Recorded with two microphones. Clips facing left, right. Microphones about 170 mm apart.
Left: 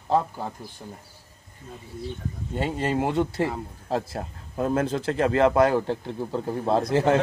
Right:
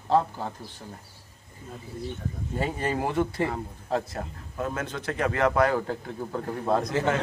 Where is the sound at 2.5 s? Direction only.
25° left (ahead or behind).